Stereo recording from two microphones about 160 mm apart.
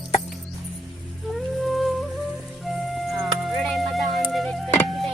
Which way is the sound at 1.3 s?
Centre (ahead or behind).